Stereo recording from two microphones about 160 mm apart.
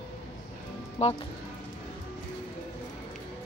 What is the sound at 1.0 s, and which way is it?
Speech, 40° left (ahead or behind).